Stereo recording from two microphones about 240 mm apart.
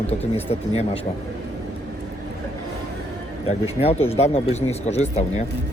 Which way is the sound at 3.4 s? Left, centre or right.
Left.